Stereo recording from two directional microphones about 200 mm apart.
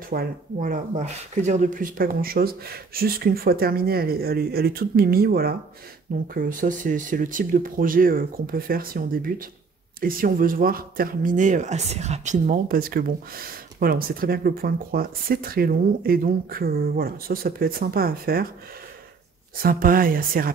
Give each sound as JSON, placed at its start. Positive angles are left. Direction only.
{"t": 0.1, "sound": "speech", "side_deg": -45}
{"t": 19.6, "sound": "speech", "side_deg": -45}